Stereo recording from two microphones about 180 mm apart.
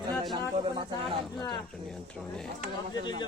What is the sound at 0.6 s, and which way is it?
Speech, 30° right (ahead or behind).